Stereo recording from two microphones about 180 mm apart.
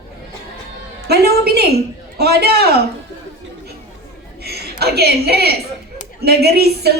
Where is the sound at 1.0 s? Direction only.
60° right (ahead or behind).